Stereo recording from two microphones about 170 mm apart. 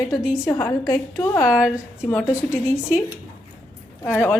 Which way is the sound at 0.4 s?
20° left (ahead or behind).